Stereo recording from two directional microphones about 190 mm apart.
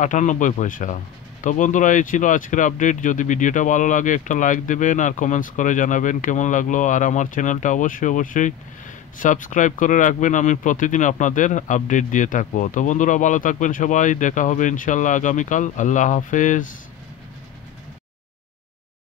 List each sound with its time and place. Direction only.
0.0 s speech: 40° left (ahead or behind)